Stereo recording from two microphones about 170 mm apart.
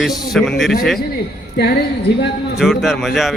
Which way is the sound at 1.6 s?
70° left (ahead or behind).